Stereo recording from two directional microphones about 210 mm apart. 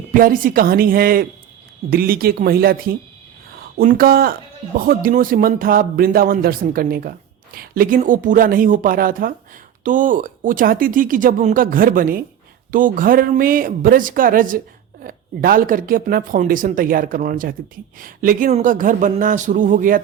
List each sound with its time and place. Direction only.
0.1 s speech: 40° right (ahead or behind)